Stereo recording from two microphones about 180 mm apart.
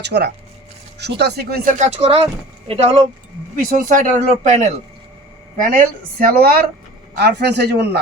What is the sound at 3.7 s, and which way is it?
A man's voice, 45° right (ahead or behind).